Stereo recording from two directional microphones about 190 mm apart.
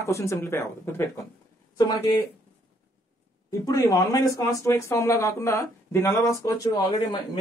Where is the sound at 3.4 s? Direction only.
15° left (ahead or behind).